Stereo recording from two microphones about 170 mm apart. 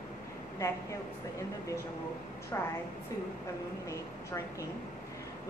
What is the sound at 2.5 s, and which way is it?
Speech, 15° left (ahead or behind).